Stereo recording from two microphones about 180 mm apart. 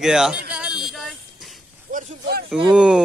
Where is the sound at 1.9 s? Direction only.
45° right (ahead or behind).